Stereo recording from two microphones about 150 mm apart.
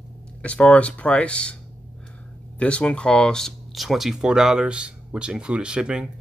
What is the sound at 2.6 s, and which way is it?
Speech, 10° left (ahead or behind).